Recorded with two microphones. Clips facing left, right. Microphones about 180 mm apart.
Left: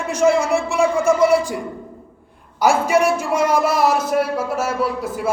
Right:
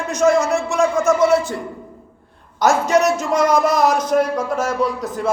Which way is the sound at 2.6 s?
10° left (ahead or behind).